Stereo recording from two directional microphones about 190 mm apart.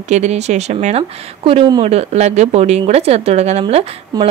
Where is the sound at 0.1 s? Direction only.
35° right (ahead or behind).